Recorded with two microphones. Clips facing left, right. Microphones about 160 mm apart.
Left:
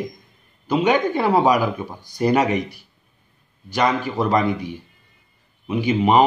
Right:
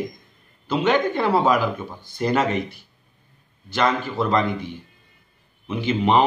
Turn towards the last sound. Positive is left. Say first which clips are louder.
# left 3 dB
turn(degrees=10)  # may be behind; listen again after turning